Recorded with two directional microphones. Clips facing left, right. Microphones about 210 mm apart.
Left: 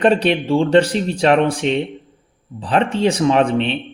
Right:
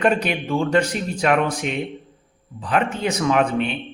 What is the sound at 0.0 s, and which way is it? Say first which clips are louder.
A man's voice: left 5 dB; 30° left (ahead or behind).